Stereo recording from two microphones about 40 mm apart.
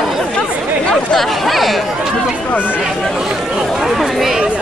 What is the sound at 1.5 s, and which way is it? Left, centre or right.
Chatter, centre.